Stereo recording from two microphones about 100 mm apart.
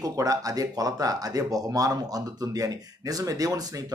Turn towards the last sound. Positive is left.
turn(degrees=-35)  # may be behind; listen again after turning